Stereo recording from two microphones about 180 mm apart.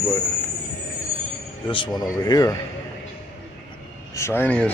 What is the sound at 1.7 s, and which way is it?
Speech, 25° left (ahead or behind).